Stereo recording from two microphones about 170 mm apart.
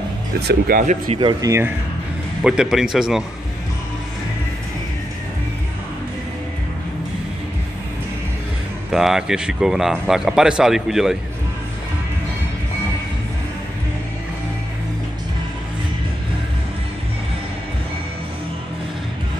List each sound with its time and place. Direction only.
0.4 s speech: 70° right (ahead or behind)
1.4 s speech: 15° right (ahead or behind)
2.4 s speech: 5° right (ahead or behind)
8.9 s speech: centre (ahead or behind)